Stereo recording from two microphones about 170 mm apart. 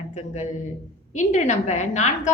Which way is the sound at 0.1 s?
40° left (ahead or behind).